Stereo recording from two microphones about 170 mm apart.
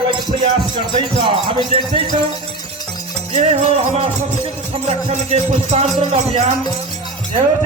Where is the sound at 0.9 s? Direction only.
30° right (ahead or behind).